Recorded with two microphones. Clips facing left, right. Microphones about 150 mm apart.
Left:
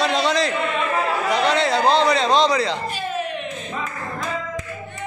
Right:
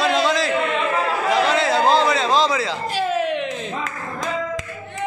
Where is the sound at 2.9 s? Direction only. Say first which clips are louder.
Right 5 dB; 90° right.